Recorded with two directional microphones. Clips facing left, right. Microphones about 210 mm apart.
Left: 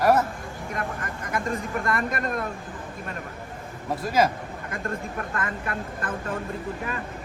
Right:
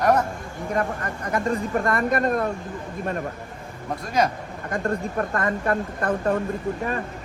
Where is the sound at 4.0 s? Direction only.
5° left (ahead or behind).